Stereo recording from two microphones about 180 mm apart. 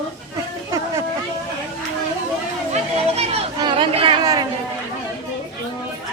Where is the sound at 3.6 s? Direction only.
25° right (ahead or behind).